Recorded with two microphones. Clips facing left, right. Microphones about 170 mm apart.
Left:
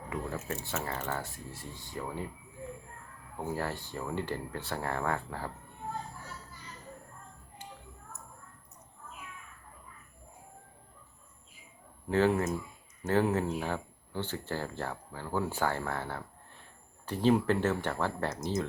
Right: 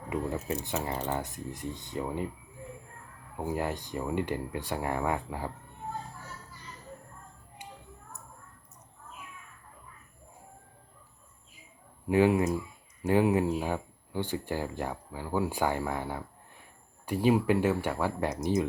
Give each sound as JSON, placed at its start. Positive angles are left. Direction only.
{"t": 0.1, "sound": "speech", "side_deg": -15}
{"t": 3.3, "sound": "speech", "side_deg": -15}
{"t": 12.0, "sound": "speech", "side_deg": -10}